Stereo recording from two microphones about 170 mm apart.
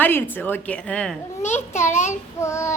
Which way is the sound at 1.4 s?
45° left (ahead or behind).